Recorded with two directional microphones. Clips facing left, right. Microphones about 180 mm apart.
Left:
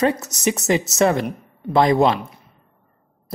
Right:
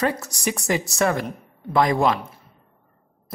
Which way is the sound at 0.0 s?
20° left (ahead or behind).